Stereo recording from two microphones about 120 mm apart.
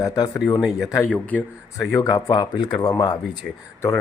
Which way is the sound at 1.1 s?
15° left (ahead or behind).